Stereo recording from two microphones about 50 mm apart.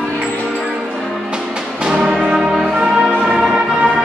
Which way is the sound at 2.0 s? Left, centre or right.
Centre.